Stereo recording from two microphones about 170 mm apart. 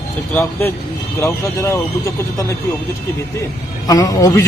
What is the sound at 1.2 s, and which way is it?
Speech, 15° left (ahead or behind).